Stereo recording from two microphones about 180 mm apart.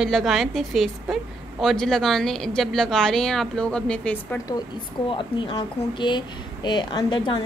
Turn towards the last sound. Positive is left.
turn(degrees=25)  # may be behind; listen again after turning